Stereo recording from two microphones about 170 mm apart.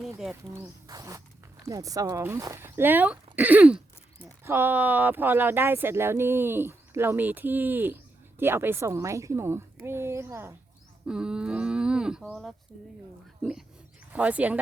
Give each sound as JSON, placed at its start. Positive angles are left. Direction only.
{"t": 0.5, "sound": "speech", "side_deg": -20}
{"t": 11.0, "sound": "a sound", "side_deg": -5}
{"t": 12.2, "sound": "speech", "side_deg": 0}